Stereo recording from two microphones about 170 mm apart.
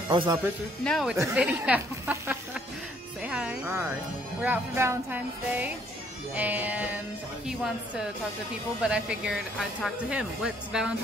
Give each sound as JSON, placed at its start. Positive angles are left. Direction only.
{"t": 0.1, "sound": "speech", "side_deg": -30}
{"t": 0.8, "sound": "speech", "side_deg": 0}
{"t": 1.1, "sound": "speech", "side_deg": -10}